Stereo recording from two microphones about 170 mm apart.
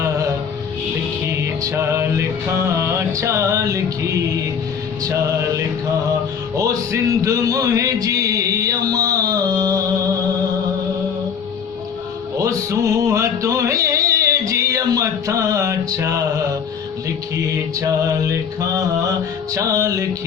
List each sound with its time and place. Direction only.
1.7 s music: 15° right (ahead or behind)
6.6 s music: 20° right (ahead or behind)
12.4 s music: 20° right (ahead or behind)
19.5 s music: 20° right (ahead or behind)